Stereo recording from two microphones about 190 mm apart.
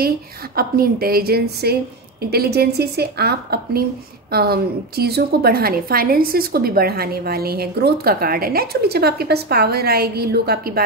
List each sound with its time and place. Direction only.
0.6 s a woman's voice: 50° right (ahead or behind)